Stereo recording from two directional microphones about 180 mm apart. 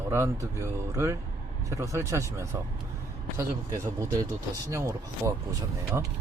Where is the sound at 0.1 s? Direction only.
15° right (ahead or behind).